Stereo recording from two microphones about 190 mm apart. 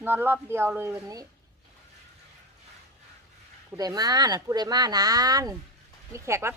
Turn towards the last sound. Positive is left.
turn(degrees=-15)  # may be behind; listen again after turning